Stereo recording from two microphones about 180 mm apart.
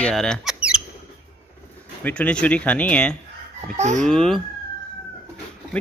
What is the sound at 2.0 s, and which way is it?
Speech, 5° left (ahead or behind).